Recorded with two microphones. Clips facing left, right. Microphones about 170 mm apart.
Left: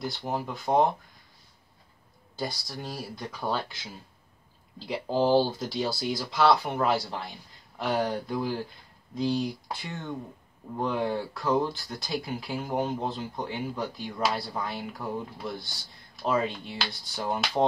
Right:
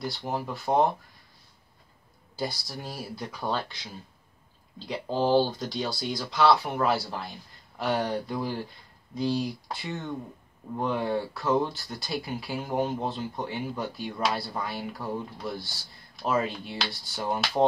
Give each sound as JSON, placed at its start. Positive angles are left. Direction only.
{"t": 0.0, "sound": "speech", "side_deg": 0}
{"t": 2.3, "sound": "speech", "side_deg": -5}